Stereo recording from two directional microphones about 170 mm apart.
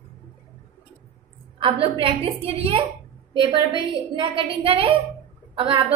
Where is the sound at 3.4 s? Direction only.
30° right (ahead or behind).